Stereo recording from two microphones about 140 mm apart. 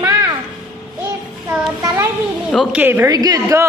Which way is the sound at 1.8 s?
15° right (ahead or behind).